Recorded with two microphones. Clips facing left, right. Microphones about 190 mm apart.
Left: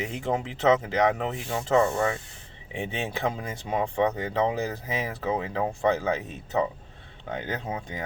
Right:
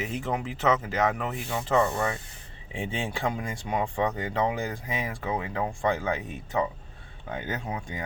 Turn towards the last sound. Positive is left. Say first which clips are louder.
# left 1 dB
turn(degrees=20)  # may be behind; listen again after turning